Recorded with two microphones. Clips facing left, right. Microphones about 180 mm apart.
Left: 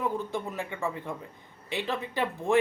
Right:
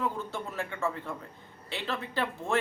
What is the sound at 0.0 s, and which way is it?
Speech, 15° left (ahead or behind).